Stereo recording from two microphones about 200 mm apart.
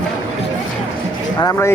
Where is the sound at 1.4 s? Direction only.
15° left (ahead or behind).